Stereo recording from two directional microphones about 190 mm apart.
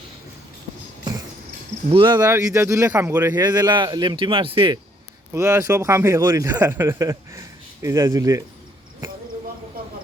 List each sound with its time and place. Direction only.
1.9 s a man's voice: 25° right (ahead or behind)
5.3 s a man's voice: 15° right (ahead or behind)